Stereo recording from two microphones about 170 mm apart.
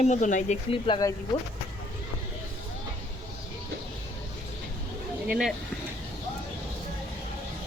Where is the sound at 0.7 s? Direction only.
30° left (ahead or behind).